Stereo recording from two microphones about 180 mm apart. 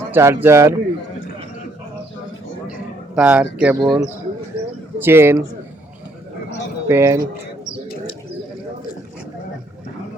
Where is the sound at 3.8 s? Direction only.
25° right (ahead or behind).